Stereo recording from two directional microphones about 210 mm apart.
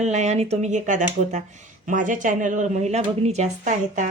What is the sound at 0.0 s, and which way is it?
A woman's voice, 35° right (ahead or behind).